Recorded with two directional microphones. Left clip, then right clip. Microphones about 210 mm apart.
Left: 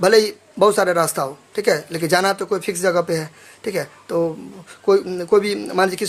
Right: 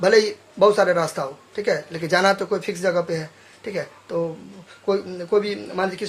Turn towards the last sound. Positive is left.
turn(degrees=40)  # may be behind; listen again after turning